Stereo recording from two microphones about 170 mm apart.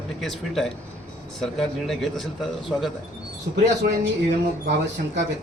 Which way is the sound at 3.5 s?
80° right.